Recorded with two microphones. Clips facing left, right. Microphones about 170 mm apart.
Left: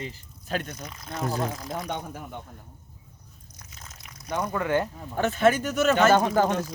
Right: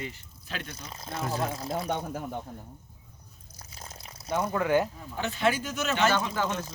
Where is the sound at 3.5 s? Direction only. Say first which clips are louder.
Right 4 dB; 30° right (ahead or behind).